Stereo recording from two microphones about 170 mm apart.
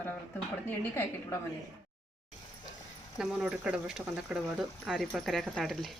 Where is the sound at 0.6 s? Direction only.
15° left (ahead or behind).